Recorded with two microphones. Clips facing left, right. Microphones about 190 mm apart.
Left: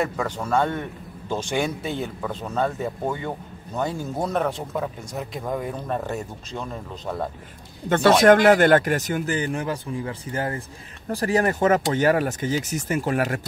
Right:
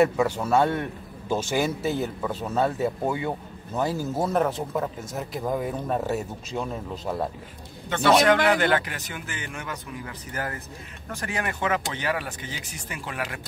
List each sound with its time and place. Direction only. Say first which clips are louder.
0.0 s a man's voice: right 5 dB; 5° right (ahead or behind)
7.9 s speech: left 4 dB; 50° left (ahead or behind)